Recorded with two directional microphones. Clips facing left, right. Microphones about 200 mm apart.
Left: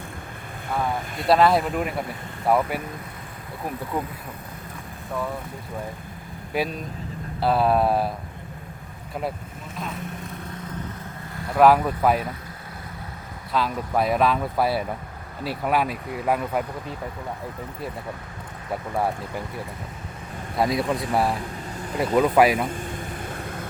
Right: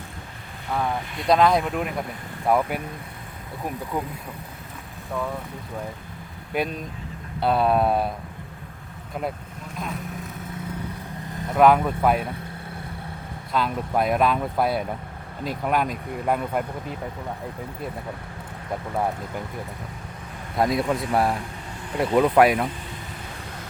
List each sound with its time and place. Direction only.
1.3 s speech: 5° left (ahead or behind)
6.5 s speech: centre (ahead or behind)
9.7 s vehicle: centre (ahead or behind)
11.3 s vehicle: 20° right (ahead or behind)
11.5 s speech: 5° left (ahead or behind)
13.5 s speech: centre (ahead or behind)
20.6 s speech: centre (ahead or behind)
22.7 s vehicle: 50° left (ahead or behind)